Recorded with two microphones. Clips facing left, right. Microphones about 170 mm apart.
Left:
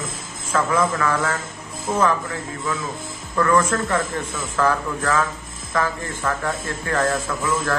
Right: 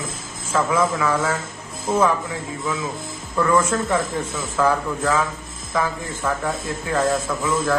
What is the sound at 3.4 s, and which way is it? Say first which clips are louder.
A man's voice: even; 10° right (ahead or behind).